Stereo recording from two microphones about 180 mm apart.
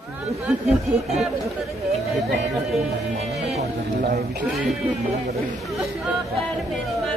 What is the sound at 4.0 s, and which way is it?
Speech, 60° right (ahead or behind).